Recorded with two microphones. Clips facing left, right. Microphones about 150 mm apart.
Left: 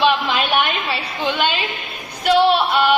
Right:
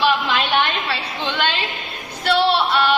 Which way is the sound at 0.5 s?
15° left (ahead or behind).